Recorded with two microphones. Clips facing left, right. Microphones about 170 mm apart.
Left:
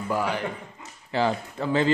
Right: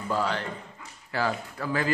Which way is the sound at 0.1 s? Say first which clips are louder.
Left 1 dB; 10° left (ahead or behind).